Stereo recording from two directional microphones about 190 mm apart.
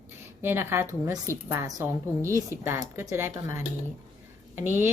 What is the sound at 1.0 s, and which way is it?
A woman's voice, 15° right (ahead or behind).